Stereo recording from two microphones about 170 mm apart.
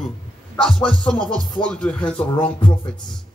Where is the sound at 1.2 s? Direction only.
25° right (ahead or behind).